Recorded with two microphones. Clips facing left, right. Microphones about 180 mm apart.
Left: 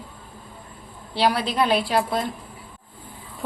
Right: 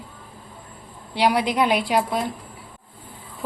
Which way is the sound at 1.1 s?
15° right (ahead or behind).